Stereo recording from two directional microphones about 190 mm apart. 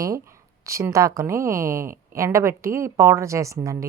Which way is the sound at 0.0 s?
15° right (ahead or behind).